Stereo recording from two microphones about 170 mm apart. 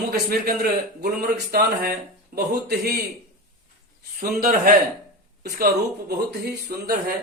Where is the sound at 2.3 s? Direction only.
65° right (ahead or behind).